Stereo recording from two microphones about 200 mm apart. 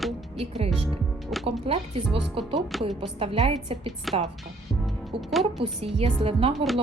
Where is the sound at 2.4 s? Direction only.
25° right (ahead or behind).